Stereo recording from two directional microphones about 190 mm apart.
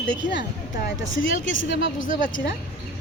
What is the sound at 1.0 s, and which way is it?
Speech, 85° left.